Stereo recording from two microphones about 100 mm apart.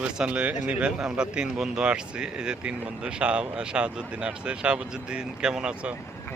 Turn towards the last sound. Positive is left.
turn(degrees=-10)  # may be behind; listen again after turning